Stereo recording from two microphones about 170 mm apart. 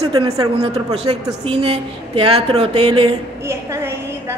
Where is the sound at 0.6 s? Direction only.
35° right (ahead or behind).